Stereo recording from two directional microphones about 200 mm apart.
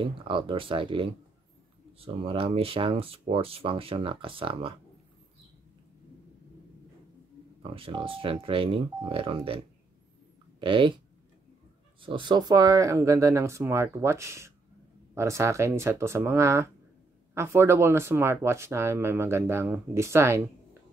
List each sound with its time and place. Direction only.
0.0 s speech: 25° right (ahead or behind)
7.6 s speech: 25° right (ahead or behind)
12.0 s speech: 25° right (ahead or behind)